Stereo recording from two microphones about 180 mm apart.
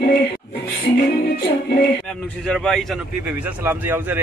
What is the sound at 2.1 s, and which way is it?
A man's voice, 5° left (ahead or behind).